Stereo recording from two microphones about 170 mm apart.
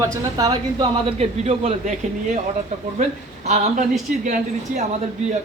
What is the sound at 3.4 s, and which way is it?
A woman's voice, 40° right (ahead or behind).